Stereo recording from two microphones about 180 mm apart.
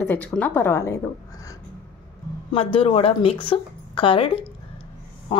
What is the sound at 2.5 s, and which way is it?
A woman's voice, 30° left (ahead or behind).